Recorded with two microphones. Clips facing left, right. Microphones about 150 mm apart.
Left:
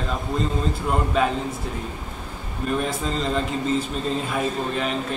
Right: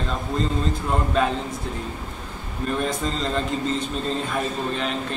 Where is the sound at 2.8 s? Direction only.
5° left (ahead or behind).